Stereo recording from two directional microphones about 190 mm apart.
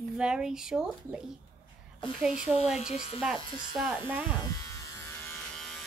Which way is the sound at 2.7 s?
35° left (ahead or behind).